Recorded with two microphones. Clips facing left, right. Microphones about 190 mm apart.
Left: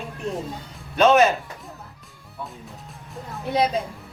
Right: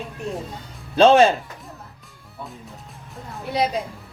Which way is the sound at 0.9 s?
30° right (ahead or behind).